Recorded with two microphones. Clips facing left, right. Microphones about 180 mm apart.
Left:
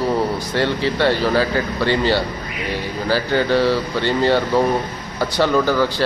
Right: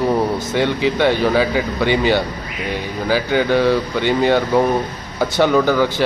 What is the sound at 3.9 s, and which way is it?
Speech, 15° right (ahead or behind).